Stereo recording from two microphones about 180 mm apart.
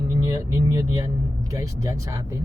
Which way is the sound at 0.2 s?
20° right (ahead or behind).